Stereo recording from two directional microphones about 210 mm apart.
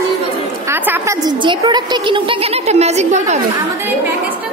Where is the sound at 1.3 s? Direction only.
20° right (ahead or behind).